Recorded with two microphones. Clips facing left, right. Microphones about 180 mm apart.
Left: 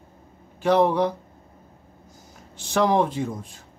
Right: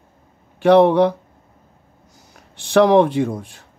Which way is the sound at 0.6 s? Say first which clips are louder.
Right 7 dB; 70° right (ahead or behind).